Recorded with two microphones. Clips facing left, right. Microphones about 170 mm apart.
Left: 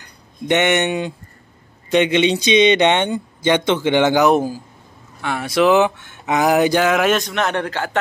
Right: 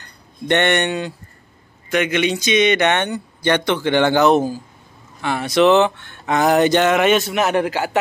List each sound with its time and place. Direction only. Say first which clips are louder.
0.0 s speech: left 1 dB; 10° left (ahead or behind); by 8.0 s 10° right (ahead or behind)